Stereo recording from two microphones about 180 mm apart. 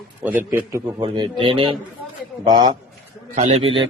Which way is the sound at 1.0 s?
25° right (ahead or behind).